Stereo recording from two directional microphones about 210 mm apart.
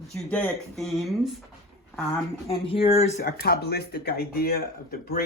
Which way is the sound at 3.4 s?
50° left (ahead or behind).